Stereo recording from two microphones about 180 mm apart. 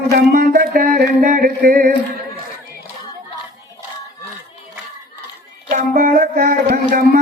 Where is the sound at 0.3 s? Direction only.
55° right (ahead or behind).